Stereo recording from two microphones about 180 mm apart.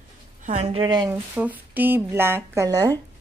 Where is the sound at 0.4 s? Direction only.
40° right (ahead or behind); by 1.2 s 20° right (ahead or behind).